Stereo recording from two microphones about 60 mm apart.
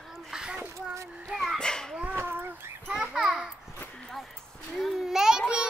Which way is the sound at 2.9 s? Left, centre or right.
Centre.